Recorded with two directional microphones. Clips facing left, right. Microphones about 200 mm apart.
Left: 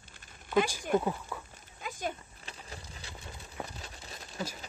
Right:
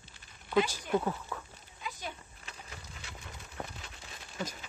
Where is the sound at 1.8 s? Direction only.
50° left (ahead or behind).